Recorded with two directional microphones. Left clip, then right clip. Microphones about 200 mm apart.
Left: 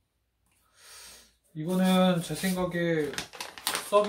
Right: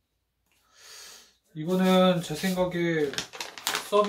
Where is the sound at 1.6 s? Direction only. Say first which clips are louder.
Right 4 dB; 10° left (ahead or behind).